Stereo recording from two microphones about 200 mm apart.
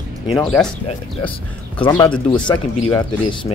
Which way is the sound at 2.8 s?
20° left (ahead or behind).